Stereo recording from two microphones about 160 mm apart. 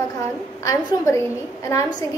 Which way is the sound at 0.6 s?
15° left (ahead or behind).